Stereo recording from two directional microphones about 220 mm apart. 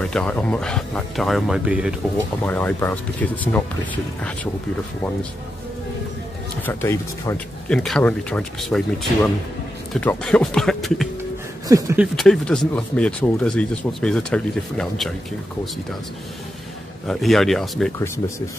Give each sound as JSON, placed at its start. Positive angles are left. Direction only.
{"t": 0.0, "sound": "speech", "side_deg": 5}
{"t": 2.4, "sound": "speech", "side_deg": 10}
{"t": 6.6, "sound": "speech", "side_deg": 10}
{"t": 11.6, "sound": "speech", "side_deg": -15}
{"t": 12.0, "sound": "speech", "side_deg": 0}
{"t": 17.1, "sound": "speech", "side_deg": 0}
{"t": 17.9, "sound": "speech", "side_deg": 15}